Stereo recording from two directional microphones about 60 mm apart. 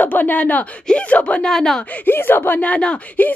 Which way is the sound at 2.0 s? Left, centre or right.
Left.